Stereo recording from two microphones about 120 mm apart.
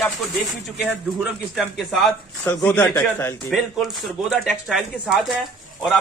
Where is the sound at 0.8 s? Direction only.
10° right (ahead or behind).